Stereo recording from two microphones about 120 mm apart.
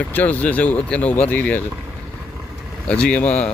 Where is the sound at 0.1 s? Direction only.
15° left (ahead or behind).